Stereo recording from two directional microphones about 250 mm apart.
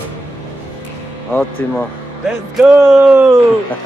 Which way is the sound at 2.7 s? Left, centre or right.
Centre.